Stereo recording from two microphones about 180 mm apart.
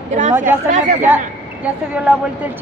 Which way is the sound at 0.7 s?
45° right (ahead or behind).